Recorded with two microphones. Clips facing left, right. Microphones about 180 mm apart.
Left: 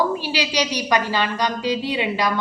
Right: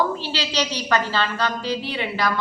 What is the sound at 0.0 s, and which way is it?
A woman's voice, 10° left (ahead or behind).